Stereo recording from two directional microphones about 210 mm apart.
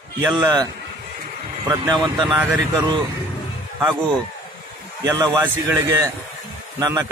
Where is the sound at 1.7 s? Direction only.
20° right (ahead or behind).